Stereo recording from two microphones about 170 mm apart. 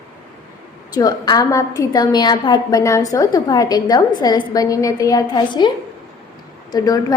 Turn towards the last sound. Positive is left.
turn(degrees=20)  # may be behind; listen again after turning